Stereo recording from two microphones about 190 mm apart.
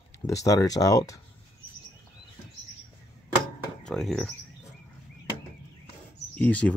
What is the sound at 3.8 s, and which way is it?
Speech, 5° left (ahead or behind).